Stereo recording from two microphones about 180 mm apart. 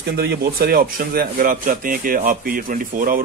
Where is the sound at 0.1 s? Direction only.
65° right (ahead or behind).